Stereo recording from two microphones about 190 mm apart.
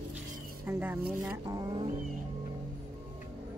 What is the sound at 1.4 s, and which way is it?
Speech, 20° right (ahead or behind).